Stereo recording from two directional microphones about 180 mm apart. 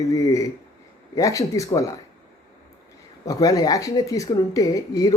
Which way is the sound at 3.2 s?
20° left (ahead or behind).